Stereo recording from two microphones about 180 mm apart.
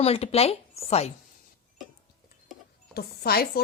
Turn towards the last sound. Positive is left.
turn(degrees=60)  # may be behind; listen again after turning